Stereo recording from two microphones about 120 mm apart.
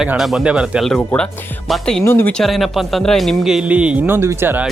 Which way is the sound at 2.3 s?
Centre (ahead or behind).